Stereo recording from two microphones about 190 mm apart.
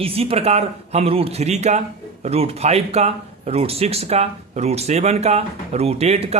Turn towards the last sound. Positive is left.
turn(degrees=-35)  # may be behind; listen again after turning